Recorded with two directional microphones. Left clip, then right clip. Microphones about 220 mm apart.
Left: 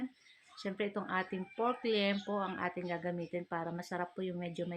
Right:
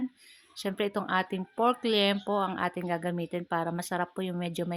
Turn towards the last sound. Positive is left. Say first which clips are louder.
# right 6 dB
turn(degrees=-50)  # may be behind; listen again after turning